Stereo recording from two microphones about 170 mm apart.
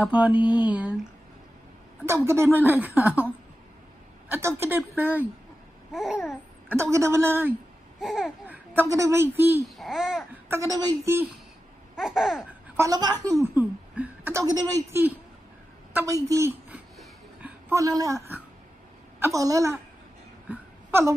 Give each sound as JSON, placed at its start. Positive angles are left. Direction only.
{"t": 0.0, "sound": "a woman's voice", "side_deg": -10}
{"t": 2.0, "sound": "a woman's voice", "side_deg": -15}
{"t": 5.9, "sound": "laughter", "side_deg": -5}
{"t": 6.8, "sound": "a woman's voice", "side_deg": -15}
{"t": 8.0, "sound": "babbling", "side_deg": 0}
{"t": 8.9, "sound": "a woman's voice", "side_deg": -15}
{"t": 9.8, "sound": "laughter", "side_deg": 0}
{"t": 10.5, "sound": "a woman's voice", "side_deg": -20}
{"t": 11.9, "sound": "laughter", "side_deg": -5}
{"t": 12.7, "sound": "a woman's voice", "side_deg": -20}
{"t": 13.6, "sound": "a woman's voice", "side_deg": -10}
{"t": 17.0, "sound": "a sound", "side_deg": -10}
{"t": 19.1, "sound": "a woman's voice", "side_deg": -15}
{"t": 20.4, "sound": "a sound", "side_deg": -15}